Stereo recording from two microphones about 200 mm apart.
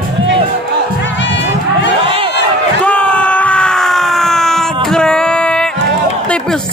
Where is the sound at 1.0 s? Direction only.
60° left (ahead or behind).